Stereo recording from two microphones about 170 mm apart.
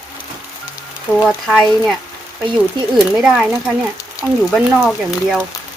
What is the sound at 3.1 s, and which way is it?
Speech, 5° right (ahead or behind).